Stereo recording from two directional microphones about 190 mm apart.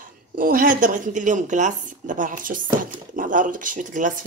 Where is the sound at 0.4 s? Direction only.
45° right (ahead or behind).